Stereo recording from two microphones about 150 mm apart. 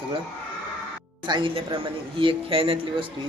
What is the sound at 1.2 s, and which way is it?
A man's voice, 30° right (ahead or behind).